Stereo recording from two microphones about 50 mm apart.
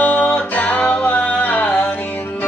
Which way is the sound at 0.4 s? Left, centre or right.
Left.